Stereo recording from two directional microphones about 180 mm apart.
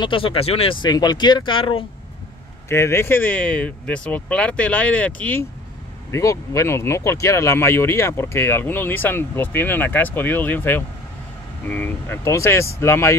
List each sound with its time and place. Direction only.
0.0 s speech: 30° left (ahead or behind)
2.7 s speech: 15° left (ahead or behind)